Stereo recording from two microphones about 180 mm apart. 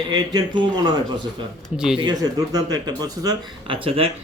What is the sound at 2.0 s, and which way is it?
Speech, 20° right (ahead or behind).